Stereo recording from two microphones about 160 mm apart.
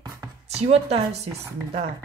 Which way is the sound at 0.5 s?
40° right (ahead or behind).